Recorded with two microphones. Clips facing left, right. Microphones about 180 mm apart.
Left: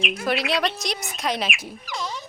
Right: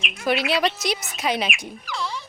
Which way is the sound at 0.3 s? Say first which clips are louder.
Right 3 dB; centre (ahead or behind).